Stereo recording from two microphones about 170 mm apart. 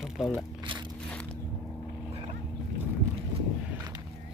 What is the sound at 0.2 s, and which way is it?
Speech, 5° right (ahead or behind).